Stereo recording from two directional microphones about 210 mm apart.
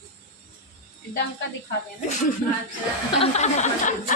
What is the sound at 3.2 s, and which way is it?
Speech, 30° left (ahead or behind).